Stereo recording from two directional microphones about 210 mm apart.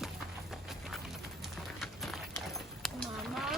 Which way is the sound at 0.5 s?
Centre (ahead or behind).